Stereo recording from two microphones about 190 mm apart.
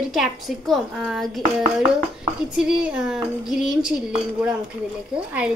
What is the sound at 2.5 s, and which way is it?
Dishes, 5° right (ahead or behind).